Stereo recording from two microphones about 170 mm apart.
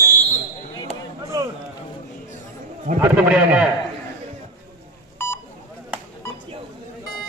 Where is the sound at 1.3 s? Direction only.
20° right (ahead or behind).